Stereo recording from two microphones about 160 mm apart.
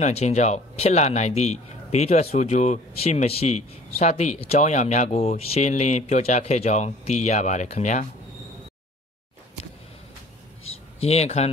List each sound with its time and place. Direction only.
0.0 s a man's voice: 45° left (ahead or behind)
11.0 s speech: 40° left (ahead or behind)